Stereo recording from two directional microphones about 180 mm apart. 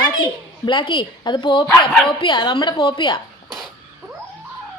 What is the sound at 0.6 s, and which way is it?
Speech, 25° left (ahead or behind).